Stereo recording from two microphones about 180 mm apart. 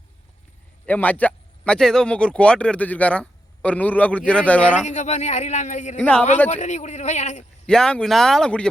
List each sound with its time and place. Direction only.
0.9 s speech: 10° left (ahead or behind)
4.9 s speech: 40° left (ahead or behind)
6.0 s speech: 5° left (ahead or behind)
6.5 s speech: 40° left (ahead or behind)
7.7 s speech: 5° left (ahead or behind)